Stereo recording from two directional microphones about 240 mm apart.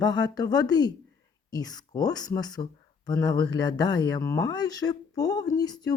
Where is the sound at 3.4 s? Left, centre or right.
Right.